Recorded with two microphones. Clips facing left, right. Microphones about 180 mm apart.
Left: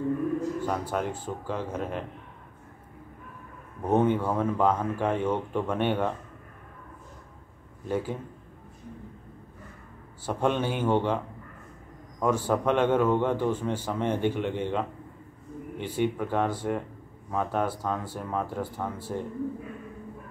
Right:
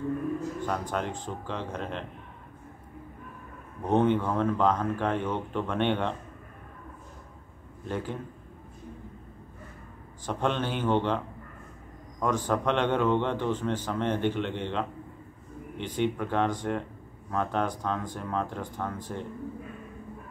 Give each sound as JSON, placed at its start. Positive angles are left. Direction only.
{"t": 0.6, "sound": "a man's voice", "side_deg": 10}
{"t": 3.8, "sound": "a man's voice", "side_deg": 10}
{"t": 7.9, "sound": "a man's voice", "side_deg": 10}
{"t": 10.2, "sound": "a man's voice", "side_deg": 10}